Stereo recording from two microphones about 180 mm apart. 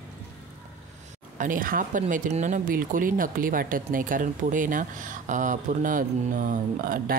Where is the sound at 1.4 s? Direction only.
50° right (ahead or behind).